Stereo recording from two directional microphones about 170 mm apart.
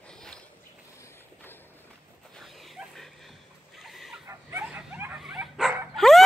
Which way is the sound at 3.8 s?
Centre (ahead or behind).